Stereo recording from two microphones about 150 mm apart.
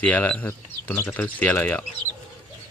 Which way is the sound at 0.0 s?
10° left (ahead or behind).